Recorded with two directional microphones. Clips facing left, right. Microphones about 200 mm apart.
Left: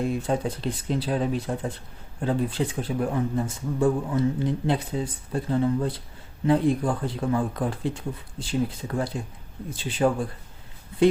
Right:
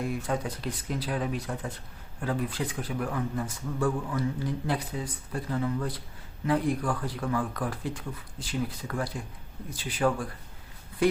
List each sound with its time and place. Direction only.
0.0 s a man's voice: 25° left (ahead or behind)